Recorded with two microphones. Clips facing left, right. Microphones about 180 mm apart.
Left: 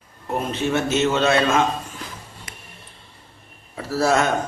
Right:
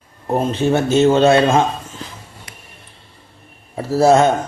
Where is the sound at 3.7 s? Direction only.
25° right (ahead or behind).